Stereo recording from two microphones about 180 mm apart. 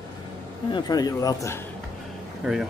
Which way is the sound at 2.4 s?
5° right (ahead or behind).